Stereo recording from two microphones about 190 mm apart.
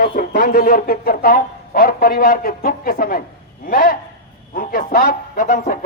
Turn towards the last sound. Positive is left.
turn(degrees=45)  # may be behind; listen again after turning